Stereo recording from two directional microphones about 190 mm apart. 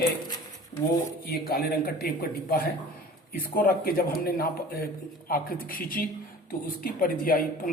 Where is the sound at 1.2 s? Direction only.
55° left (ahead or behind).